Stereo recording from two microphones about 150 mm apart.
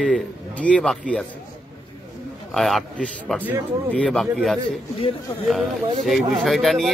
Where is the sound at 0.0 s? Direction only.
5° left (ahead or behind).